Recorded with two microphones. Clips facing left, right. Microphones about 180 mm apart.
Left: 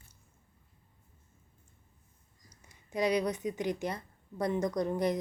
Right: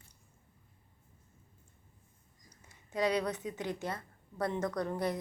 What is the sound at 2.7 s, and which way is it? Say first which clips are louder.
A woman's voice: left 2 dB; 10° left (ahead or behind).